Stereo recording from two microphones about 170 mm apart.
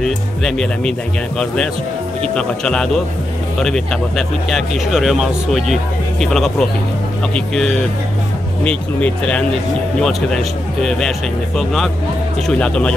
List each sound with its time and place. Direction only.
0.0 s speech: centre (ahead or behind)
2.3 s speech: 5° left (ahead or behind)